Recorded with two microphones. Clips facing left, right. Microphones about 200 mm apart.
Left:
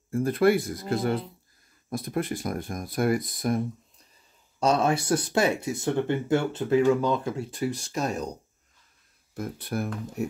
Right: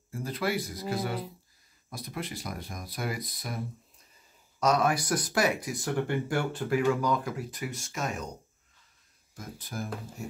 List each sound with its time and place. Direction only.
0.1 s speech: 55° left (ahead or behind)
4.6 s speech: 30° left (ahead or behind)
9.3 s speech: 60° left (ahead or behind)